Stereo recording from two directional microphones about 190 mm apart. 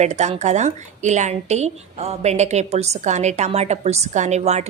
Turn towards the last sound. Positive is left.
turn(degrees=-35)  # may be behind; listen again after turning